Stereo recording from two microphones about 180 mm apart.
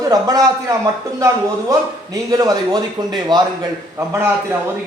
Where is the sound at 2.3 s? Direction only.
20° right (ahead or behind).